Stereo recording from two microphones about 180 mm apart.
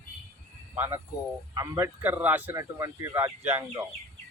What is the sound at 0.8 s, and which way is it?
A man's voice, 10° right (ahead or behind).